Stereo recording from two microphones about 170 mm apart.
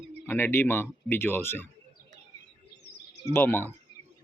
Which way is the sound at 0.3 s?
10° left (ahead or behind).